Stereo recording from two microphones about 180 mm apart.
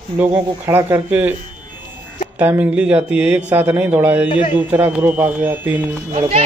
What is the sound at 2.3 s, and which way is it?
Speech, 10° right (ahead or behind).